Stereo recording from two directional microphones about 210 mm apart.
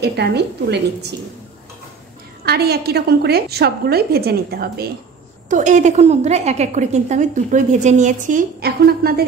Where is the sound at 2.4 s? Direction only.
50° right (ahead or behind).